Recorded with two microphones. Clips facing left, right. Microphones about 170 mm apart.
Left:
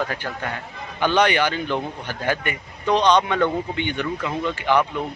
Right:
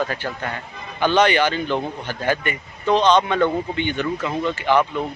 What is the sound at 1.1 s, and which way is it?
Speech, 10° left (ahead or behind).